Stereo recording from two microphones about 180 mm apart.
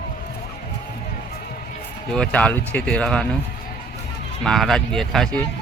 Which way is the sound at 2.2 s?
10° left (ahead or behind).